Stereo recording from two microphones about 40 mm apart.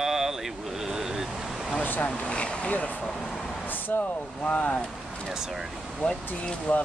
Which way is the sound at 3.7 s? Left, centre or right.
Left.